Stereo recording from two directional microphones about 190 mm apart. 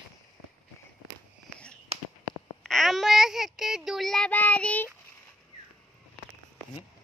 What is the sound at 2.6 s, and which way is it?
Speech, centre (ahead or behind).